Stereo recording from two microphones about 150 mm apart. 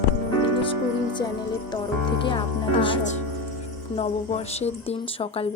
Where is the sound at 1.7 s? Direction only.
30° left (ahead or behind).